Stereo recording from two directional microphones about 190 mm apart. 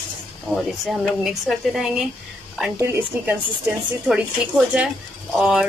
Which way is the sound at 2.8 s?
15° right (ahead or behind).